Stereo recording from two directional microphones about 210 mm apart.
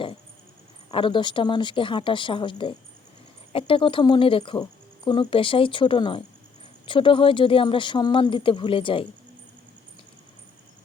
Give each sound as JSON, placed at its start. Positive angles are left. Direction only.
{"t": 0.9, "sound": "speech", "side_deg": 25}